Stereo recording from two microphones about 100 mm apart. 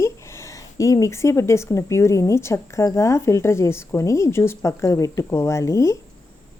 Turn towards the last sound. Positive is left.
turn(degrees=30)  # may be behind; listen again after turning